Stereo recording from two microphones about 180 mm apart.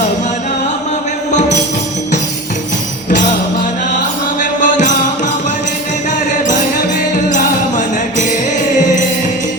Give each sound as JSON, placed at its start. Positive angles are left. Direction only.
{"t": 4.6, "sound": "music", "side_deg": 45}